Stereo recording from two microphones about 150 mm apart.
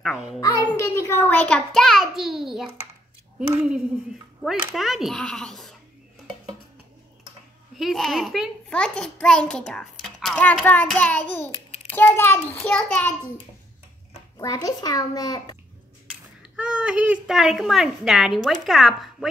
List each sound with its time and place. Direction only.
0.0 s a child's voice: centre (ahead or behind)
0.7 s a child's voice: 15° left (ahead or behind); by 5.8 s centre (ahead or behind)
7.7 s a child's voice: centre (ahead or behind)
14.4 s a child's voice: 25° left (ahead or behind)
16.1 s speech: 10° right (ahead or behind)